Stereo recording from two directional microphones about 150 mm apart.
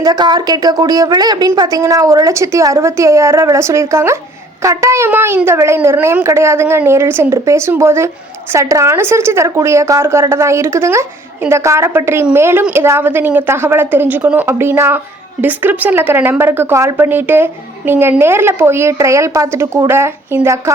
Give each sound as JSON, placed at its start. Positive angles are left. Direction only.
{"t": 0.0, "sound": "a woman's voice", "side_deg": -25}